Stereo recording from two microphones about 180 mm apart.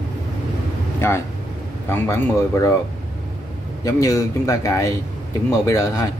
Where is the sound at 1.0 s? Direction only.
15° left (ahead or behind).